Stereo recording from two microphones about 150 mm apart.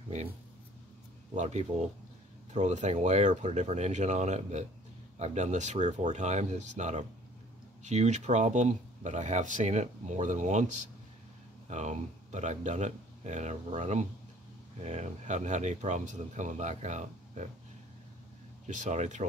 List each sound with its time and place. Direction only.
1.3 s speech: 50° right (ahead or behind)
18.7 s speech: 55° right (ahead or behind)